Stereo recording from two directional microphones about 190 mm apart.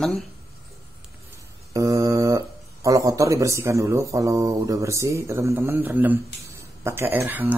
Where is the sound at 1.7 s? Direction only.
15° right (ahead or behind).